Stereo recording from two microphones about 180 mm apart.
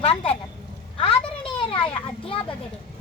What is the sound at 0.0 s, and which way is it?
Speech, 35° left (ahead or behind).